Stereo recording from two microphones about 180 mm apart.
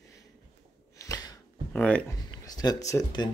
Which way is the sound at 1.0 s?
20° left (ahead or behind).